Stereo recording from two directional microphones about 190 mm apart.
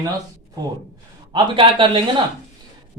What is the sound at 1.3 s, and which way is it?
Speech, 25° right (ahead or behind).